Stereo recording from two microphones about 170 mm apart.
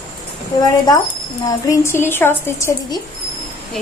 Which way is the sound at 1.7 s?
15° left (ahead or behind).